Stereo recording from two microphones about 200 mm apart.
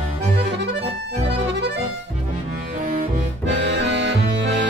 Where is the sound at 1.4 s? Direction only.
60° right (ahead or behind).